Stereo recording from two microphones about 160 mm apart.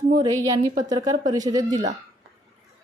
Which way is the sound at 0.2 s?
20° right (ahead or behind).